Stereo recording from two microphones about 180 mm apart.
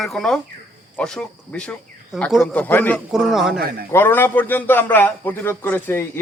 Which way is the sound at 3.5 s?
65° right (ahead or behind).